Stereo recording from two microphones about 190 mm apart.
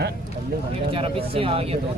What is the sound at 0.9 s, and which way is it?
Speech, 30° right (ahead or behind).